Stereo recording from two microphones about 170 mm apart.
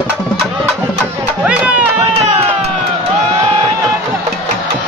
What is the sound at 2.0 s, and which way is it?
Music, 35° right (ahead or behind).